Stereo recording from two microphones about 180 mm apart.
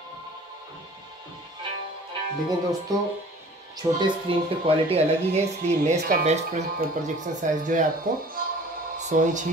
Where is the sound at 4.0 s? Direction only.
30° right (ahead or behind).